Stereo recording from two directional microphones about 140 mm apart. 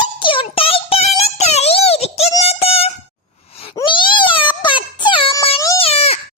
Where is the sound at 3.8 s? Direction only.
35° left (ahead or behind).